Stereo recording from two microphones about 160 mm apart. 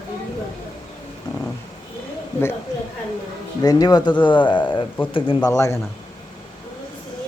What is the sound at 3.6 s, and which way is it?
Speech, 25° left (ahead or behind).